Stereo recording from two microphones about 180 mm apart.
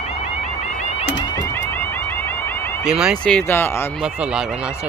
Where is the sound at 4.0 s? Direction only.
5° right (ahead or behind).